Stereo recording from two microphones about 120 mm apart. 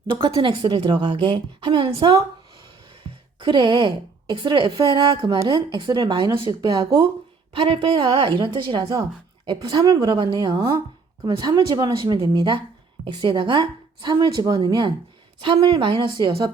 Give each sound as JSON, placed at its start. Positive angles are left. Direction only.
{"t": 0.2, "sound": "a woman's voice", "side_deg": -50}
{"t": 7.5, "sound": "a woman's voice", "side_deg": -50}